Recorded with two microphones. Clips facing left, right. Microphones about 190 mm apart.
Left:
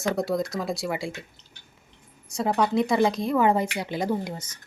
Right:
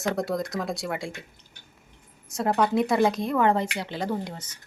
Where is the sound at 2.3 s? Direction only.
Centre (ahead or behind).